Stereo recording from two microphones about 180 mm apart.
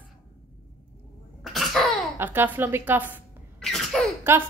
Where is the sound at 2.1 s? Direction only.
10° right (ahead or behind).